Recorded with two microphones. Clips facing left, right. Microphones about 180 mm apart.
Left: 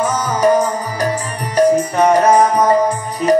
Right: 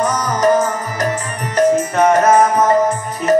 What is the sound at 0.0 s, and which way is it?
Music, 5° left (ahead or behind).